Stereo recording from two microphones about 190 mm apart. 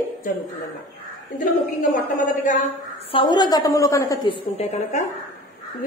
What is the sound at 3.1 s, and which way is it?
A woman's voice, 25° left (ahead or behind).